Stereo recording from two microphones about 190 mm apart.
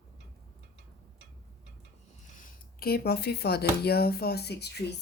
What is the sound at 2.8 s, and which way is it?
Speech, 55° left (ahead or behind).